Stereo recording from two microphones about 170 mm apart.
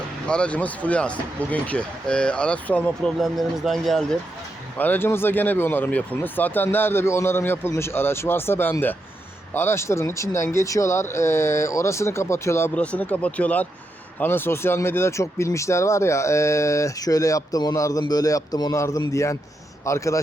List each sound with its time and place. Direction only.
0.3 s speech: 5° left (ahead or behind)
4.8 s speech: 10° left (ahead or behind)